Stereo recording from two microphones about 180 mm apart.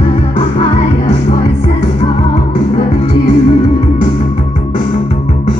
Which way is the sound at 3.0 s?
35° left (ahead or behind).